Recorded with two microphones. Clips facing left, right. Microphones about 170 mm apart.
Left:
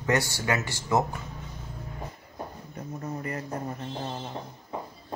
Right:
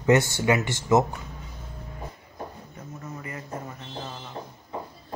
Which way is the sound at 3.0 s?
40° left (ahead or behind).